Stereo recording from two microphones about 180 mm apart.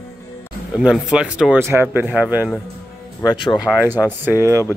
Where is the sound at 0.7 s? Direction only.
5° right (ahead or behind).